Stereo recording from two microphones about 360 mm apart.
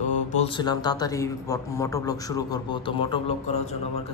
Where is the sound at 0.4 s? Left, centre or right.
Centre.